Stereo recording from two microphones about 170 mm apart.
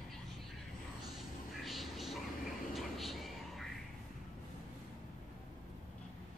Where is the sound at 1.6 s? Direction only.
Centre (ahead or behind).